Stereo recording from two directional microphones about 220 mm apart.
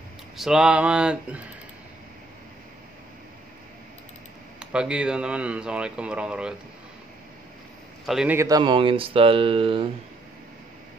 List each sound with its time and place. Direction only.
0.4 s speech: 5° right (ahead or behind)
4.6 s speech: 5° right (ahead or behind)
8.1 s speech: 5° right (ahead or behind); by 9.8 s 25° right (ahead or behind)